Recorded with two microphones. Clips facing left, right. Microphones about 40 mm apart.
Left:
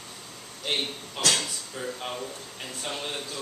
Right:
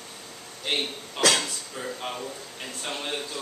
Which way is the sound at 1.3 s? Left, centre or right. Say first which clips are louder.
Right 2 dB; centre.